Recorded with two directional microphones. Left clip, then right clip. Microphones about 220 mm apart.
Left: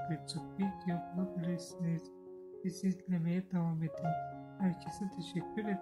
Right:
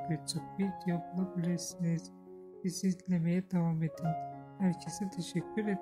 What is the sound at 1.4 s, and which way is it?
Speech, 20° right (ahead or behind).